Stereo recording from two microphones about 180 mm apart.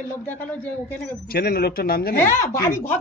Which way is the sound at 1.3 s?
55° left (ahead or behind).